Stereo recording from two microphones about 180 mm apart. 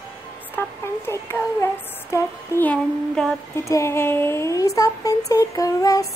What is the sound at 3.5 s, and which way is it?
Speech, 15° left (ahead or behind).